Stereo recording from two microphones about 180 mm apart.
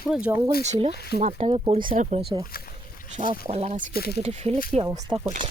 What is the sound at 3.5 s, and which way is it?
Speech, 35° right (ahead or behind).